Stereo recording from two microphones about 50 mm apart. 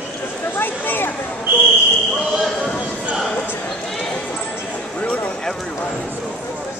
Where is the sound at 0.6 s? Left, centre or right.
Left.